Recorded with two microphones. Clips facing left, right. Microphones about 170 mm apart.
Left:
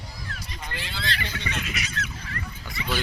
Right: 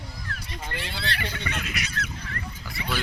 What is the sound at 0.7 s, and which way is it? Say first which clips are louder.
Speech: even; 60° right (ahead or behind).